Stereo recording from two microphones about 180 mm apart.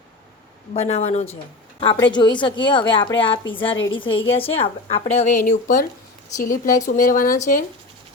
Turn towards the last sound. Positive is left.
turn(degrees=45)  # may be behind; listen again after turning